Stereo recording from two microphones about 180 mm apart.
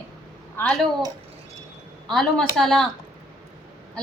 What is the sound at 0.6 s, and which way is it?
Speech, 5° left (ahead or behind).